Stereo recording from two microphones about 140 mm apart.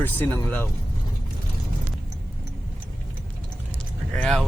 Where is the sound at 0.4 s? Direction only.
15° left (ahead or behind).